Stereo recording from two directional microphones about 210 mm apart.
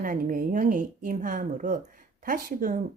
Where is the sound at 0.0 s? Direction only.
40° right (ahead or behind).